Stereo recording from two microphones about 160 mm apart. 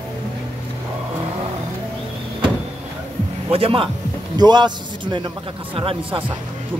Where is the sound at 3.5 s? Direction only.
35° right (ahead or behind).